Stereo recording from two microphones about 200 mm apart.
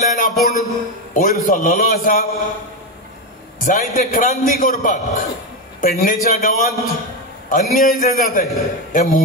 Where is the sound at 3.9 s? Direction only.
40° left (ahead or behind).